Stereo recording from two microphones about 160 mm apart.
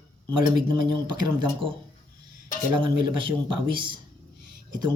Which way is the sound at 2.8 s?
30° right (ahead or behind).